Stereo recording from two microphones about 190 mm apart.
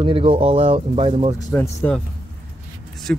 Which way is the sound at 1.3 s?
10° left (ahead or behind).